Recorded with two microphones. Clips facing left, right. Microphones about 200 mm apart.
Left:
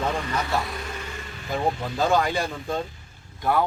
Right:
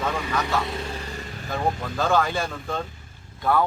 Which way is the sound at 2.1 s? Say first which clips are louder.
Right 1 dB; 15° left (ahead or behind).